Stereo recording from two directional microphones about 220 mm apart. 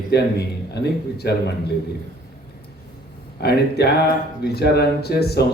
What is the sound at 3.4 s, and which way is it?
Speech, 45° left (ahead or behind).